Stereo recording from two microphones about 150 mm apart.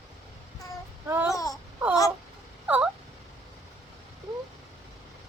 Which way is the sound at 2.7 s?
10° right (ahead or behind).